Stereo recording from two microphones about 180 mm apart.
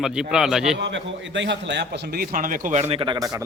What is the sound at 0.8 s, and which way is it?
A man's voice, 90° right.